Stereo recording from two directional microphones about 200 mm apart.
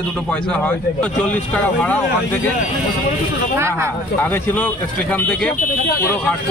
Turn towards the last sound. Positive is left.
turn(degrees=5)  # may be behind; listen again after turning